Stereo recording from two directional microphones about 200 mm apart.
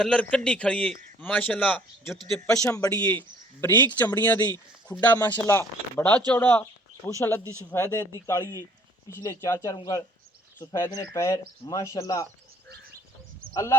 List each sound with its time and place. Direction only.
0.0 s a man's voice: 5° left (ahead or behind)
12.6 s bird: 55° right (ahead or behind)
13.5 s speech: 15° left (ahead or behind)